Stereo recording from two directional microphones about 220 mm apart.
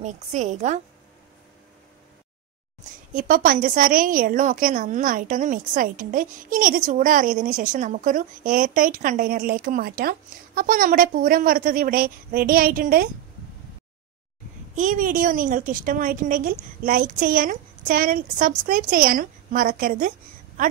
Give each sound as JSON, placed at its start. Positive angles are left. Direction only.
{"t": 0.0, "sound": "a woman's voice", "side_deg": -35}
{"t": 3.2, "sound": "a woman's voice", "side_deg": -40}
{"t": 14.8, "sound": "a woman's voice", "side_deg": -35}